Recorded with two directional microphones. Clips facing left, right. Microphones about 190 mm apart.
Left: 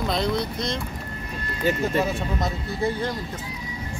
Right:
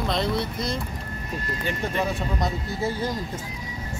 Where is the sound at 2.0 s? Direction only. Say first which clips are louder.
Left 1 dB; centre (ahead or behind).